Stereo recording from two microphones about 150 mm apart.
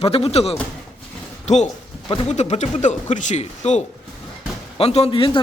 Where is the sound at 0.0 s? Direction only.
40° left (ahead or behind).